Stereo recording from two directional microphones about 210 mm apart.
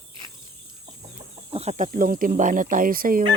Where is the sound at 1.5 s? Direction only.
35° right (ahead or behind).